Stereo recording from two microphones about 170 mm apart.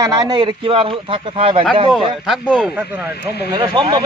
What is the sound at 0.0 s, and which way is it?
A man's voice, 20° right (ahead or behind).